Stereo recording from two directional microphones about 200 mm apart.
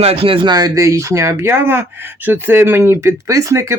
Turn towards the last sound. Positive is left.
turn(degrees=-15)  # may be behind; listen again after turning